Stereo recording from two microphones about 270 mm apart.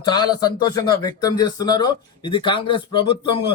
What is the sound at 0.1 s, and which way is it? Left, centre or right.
A man's voice, centre.